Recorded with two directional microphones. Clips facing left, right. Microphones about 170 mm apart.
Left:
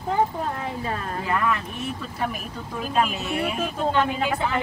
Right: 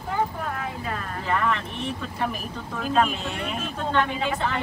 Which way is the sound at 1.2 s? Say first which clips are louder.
Even; 5° left (ahead or behind).